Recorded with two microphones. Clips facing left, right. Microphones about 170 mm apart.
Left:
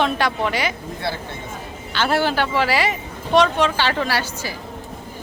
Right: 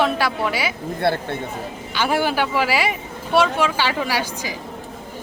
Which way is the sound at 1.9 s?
10° right (ahead or behind).